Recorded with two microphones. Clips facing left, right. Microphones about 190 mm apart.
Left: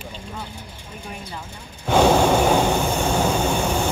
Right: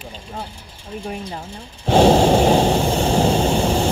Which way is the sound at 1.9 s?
30° right (ahead or behind).